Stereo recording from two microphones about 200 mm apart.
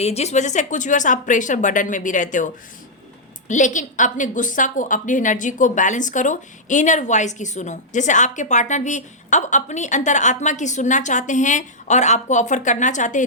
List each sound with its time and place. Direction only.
0.0 s a woman's voice: 30° left (ahead or behind)
3.5 s a woman's voice: 40° left (ahead or behind)